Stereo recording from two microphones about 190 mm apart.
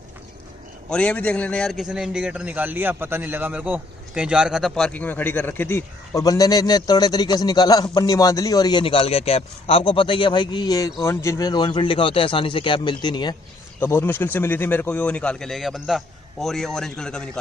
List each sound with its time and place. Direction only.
0.8 s a man's voice: 5° left (ahead or behind); by 13.4 s 25° left (ahead or behind)
13.7 s a man's voice: 10° left (ahead or behind)